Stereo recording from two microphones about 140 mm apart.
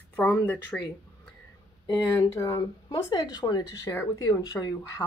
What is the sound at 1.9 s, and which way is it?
Speech, 25° left (ahead or behind).